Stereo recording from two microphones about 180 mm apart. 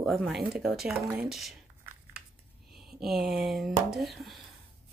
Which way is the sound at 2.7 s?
Centre (ahead or behind).